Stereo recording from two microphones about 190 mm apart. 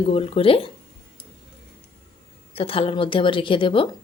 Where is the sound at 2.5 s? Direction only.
30° left (ahead or behind).